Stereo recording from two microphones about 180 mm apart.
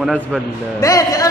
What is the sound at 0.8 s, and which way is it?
Speech, 20° left (ahead or behind).